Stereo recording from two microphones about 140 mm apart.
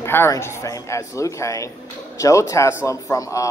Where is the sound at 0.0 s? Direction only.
15° left (ahead or behind).